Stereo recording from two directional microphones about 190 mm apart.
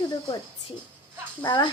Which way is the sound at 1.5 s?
25° left (ahead or behind).